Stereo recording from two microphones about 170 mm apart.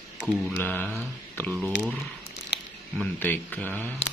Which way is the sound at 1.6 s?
5° right (ahead or behind).